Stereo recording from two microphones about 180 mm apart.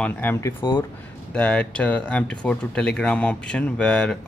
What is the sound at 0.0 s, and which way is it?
Speech, 10° left (ahead or behind).